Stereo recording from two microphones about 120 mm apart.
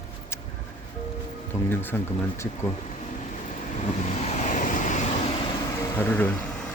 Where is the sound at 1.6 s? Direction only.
15° left (ahead or behind).